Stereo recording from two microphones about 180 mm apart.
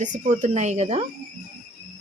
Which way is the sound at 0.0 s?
45° right (ahead or behind).